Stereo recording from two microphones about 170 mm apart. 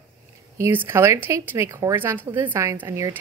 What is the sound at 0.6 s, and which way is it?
Speech, 15° right (ahead or behind).